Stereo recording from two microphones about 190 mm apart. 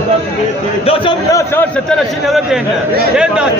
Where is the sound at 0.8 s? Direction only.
30° left (ahead or behind).